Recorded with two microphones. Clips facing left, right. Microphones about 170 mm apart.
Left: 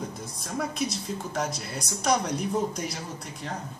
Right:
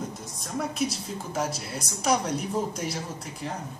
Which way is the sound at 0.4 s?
Centre (ahead or behind).